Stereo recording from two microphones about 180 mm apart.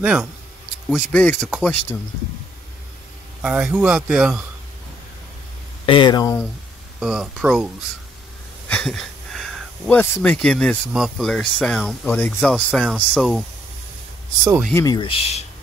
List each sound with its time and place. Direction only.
0.0 s speech: 5° right (ahead or behind)
3.4 s speech: 5° right (ahead or behind)
5.9 s speech: 25° left (ahead or behind)
7.0 s speech: 5° right (ahead or behind)
8.6 s a sound: 5° left (ahead or behind)
10.9 s speech: centre (ahead or behind)
14.7 s speech: 15° left (ahead or behind)
15.0 s speech: 30° left (ahead or behind)